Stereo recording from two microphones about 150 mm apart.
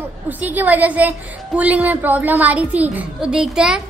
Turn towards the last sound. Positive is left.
turn(degrees=-5)  # may be behind; listen again after turning